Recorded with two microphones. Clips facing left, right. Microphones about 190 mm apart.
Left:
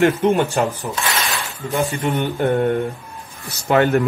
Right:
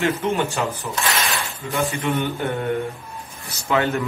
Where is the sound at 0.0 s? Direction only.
55° left (ahead or behind).